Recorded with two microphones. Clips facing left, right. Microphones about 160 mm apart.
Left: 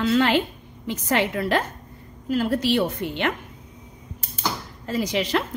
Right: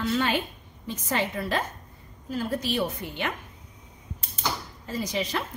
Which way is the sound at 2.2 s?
80° left.